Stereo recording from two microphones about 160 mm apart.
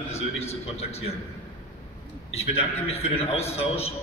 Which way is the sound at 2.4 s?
40° left (ahead or behind).